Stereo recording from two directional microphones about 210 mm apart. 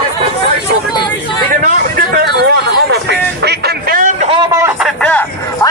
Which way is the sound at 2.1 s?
50° right (ahead or behind).